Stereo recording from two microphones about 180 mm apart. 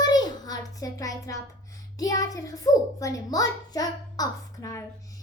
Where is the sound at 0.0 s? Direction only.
20° left (ahead or behind).